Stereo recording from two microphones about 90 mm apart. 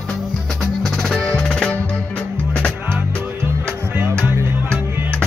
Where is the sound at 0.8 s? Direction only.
5° left (ahead or behind).